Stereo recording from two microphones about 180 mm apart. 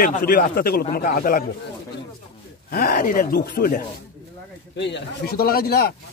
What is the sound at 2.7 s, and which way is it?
Speech, 50° left (ahead or behind).